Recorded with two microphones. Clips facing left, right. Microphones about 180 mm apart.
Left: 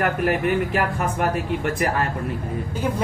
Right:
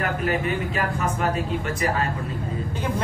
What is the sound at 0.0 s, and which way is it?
Speech, 65° left (ahead or behind).